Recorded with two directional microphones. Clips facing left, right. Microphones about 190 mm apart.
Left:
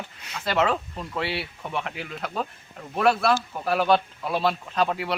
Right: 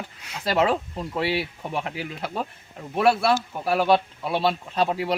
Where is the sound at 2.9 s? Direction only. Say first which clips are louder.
Right 1 dB; 5° right (ahead or behind).